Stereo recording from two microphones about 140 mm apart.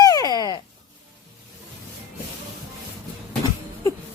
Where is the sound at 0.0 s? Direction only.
25° left (ahead or behind).